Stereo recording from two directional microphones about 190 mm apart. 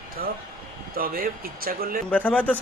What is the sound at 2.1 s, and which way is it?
Speech, 5° left (ahead or behind).